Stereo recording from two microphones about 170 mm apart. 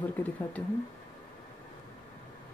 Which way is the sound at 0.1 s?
10° left (ahead or behind).